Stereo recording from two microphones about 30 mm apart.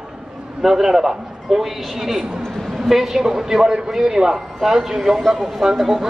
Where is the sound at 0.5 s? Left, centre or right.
Centre.